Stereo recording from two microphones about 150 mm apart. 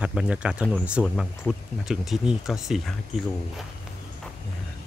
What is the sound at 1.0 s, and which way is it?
Speech, 5° left (ahead or behind).